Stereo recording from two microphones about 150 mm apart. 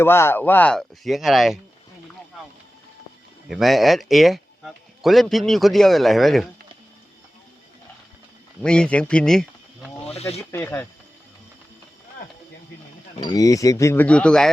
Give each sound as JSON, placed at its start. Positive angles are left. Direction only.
{"t": 0.0, "sound": "speech", "side_deg": 15}
{"t": 3.5, "sound": "speech", "side_deg": 0}
{"t": 8.6, "sound": "speech", "side_deg": 5}
{"t": 10.5, "sound": "speech", "side_deg": 15}
{"t": 13.3, "sound": "speech", "side_deg": 20}